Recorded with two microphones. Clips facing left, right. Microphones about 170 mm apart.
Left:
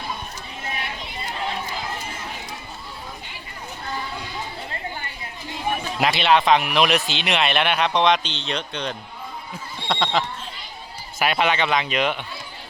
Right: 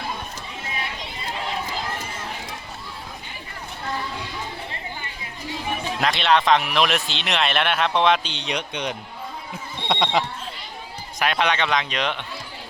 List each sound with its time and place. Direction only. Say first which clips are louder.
6.0 s speech: left 1 dB; 5° left (ahead or behind); by 9.0 s 15° right (ahead or behind)
9.9 s a sound: right 1 dB; 15° right (ahead or behind)
11.2 s speech: left 1 dB; 5° left (ahead or behind)